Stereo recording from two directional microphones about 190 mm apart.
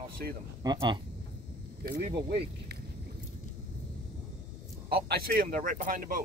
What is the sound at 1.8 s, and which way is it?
Speech, 55° right (ahead or behind).